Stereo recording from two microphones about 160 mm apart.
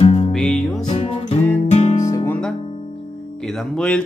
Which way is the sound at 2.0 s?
15° left (ahead or behind).